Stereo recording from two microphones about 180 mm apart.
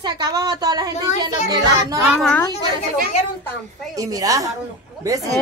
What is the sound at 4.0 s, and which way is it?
Speech, 20° right (ahead or behind).